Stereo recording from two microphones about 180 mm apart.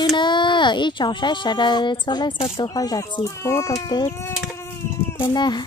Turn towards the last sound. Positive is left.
turn(degrees=25)  # may be behind; listen again after turning